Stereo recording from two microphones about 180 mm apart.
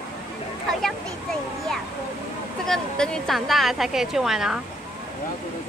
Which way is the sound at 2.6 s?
5° left (ahead or behind).